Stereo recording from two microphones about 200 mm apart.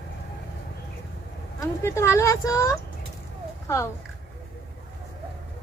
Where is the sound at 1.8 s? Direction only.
15° left (ahead or behind).